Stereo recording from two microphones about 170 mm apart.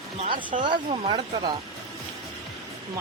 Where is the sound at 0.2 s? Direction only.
30° right (ahead or behind).